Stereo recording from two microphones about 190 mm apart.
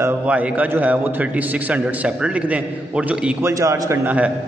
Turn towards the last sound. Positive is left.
turn(degrees=-10)  # may be behind; listen again after turning